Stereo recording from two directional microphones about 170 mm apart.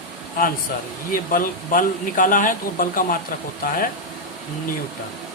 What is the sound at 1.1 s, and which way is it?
Speech, 55° left (ahead or behind).